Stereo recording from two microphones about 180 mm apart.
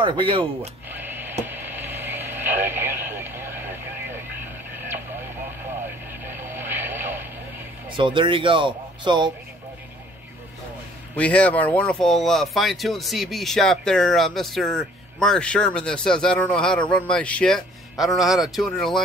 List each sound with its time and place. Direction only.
0.0 s speech: 25° right (ahead or behind)
0.6 s speech: 10° right (ahead or behind)
1.4 s radio: 10° right (ahead or behind)
7.9 s speech: 25° right (ahead or behind)
11.1 s speech: 5° left (ahead or behind)